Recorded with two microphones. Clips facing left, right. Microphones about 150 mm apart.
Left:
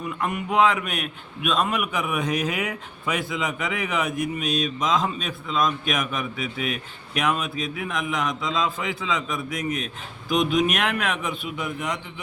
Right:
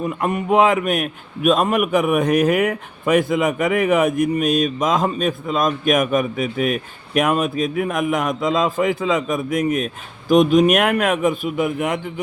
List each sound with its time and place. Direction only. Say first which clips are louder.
0.0 s a man's voice: right 6 dB; 40° right (ahead or behind); by 12.2 s 55° right (ahead or behind)